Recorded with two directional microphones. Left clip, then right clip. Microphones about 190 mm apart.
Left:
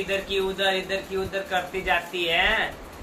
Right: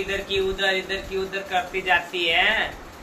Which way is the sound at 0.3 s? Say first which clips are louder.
Right 3 dB; 15° left (ahead or behind).